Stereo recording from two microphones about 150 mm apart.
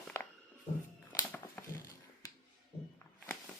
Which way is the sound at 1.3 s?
10° left (ahead or behind).